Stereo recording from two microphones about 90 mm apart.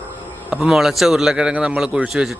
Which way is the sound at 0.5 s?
10° right (ahead or behind).